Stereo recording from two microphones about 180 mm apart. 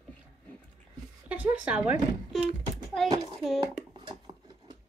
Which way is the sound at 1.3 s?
10° right (ahead or behind).